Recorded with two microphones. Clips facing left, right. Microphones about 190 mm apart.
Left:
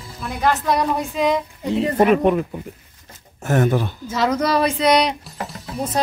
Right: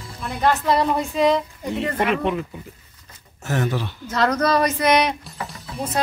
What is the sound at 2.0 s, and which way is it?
Speech, 45° left (ahead or behind).